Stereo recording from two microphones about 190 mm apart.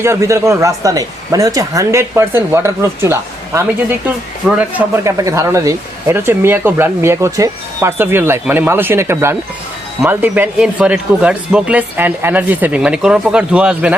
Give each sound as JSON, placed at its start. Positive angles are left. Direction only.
{"t": 0.0, "sound": "speech", "side_deg": -15}
{"t": 4.4, "sound": "speech", "side_deg": -5}
{"t": 5.0, "sound": "speech", "side_deg": -15}